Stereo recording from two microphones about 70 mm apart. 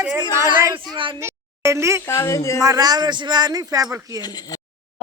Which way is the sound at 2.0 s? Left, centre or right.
Left.